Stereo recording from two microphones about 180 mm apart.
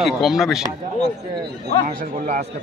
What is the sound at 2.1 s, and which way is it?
Speech, 45° right (ahead or behind).